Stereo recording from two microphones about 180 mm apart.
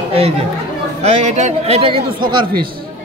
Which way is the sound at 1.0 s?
40° right (ahead or behind).